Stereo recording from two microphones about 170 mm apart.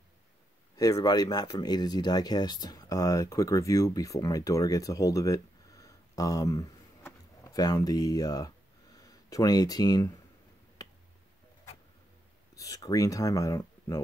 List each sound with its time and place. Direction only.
0.7 s speech: 20° left (ahead or behind)
12.5 s speech: 20° left (ahead or behind)